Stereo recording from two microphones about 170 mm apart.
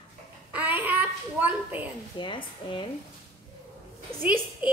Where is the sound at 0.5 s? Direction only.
10° right (ahead or behind).